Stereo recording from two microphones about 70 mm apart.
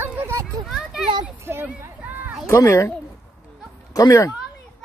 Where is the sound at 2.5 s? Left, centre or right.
Left.